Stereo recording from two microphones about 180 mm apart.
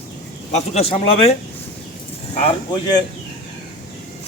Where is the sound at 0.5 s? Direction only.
35° left (ahead or behind).